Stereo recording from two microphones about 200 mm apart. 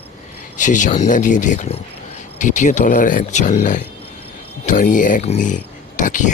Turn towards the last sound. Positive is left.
turn(degrees=40)  # may be behind; listen again after turning